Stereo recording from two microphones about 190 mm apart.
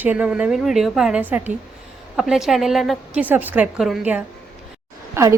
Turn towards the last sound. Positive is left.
turn(degrees=-15)  # may be behind; listen again after turning